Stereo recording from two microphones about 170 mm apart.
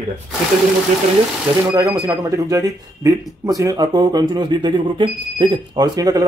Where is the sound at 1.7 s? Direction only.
20° right (ahead or behind).